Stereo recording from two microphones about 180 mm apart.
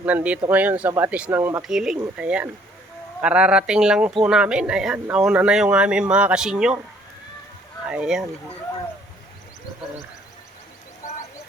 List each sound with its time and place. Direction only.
0.0 s speech: 10° right (ahead or behind)
1.6 s speech: 5° right (ahead or behind)
7.9 s speech: 5° right (ahead or behind)
11.0 s a sound: 45° left (ahead or behind)